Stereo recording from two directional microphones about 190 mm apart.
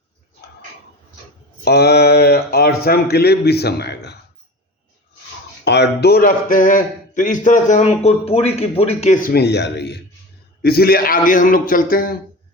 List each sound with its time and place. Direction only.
1.6 s speech: 60° left (ahead or behind)
5.6 s a man's voice: 60° left (ahead or behind); by 9.1 s 35° left (ahead or behind)
9.2 s a man's voice: 55° left (ahead or behind)